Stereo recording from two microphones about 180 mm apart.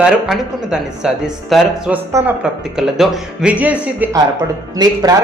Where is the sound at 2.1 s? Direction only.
15° right (ahead or behind).